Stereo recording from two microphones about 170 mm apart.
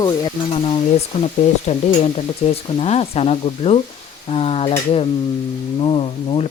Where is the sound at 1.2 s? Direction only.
40° left (ahead or behind).